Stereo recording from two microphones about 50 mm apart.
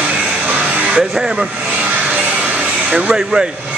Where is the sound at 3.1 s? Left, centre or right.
Centre.